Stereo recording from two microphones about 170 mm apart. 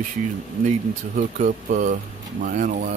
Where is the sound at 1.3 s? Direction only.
50° right (ahead or behind).